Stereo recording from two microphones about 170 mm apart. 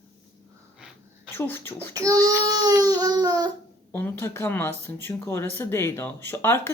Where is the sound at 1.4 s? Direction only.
15° left (ahead or behind).